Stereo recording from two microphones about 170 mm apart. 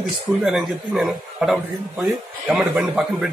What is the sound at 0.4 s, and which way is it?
A man's voice, 5° right (ahead or behind).